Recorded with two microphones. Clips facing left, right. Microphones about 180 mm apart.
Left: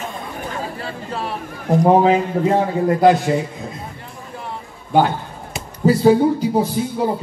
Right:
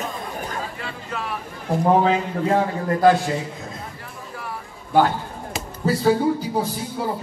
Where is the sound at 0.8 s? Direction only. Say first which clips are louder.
Left 4 dB; 30° left (ahead or behind).